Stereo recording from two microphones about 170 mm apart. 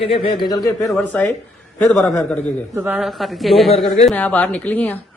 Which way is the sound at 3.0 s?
Centre (ahead or behind).